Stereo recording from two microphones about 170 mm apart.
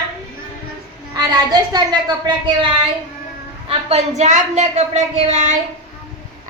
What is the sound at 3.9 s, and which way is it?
A woman's voice, 40° right (ahead or behind).